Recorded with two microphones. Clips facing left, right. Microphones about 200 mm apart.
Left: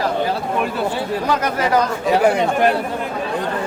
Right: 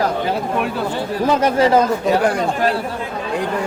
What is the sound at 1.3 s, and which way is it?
Speech, 25° right (ahead or behind).